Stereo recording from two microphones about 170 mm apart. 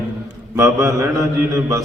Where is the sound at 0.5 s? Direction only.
20° right (ahead or behind).